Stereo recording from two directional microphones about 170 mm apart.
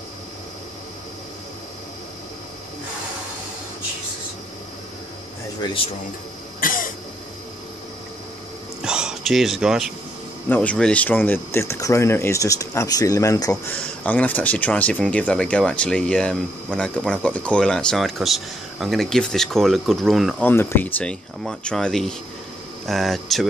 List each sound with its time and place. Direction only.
6.6 s cough: 55° left (ahead or behind)
8.8 s a sound: 5° right (ahead or behind)
10.5 s speech: 10° left (ahead or behind)
20.4 s speech: 10° left (ahead or behind)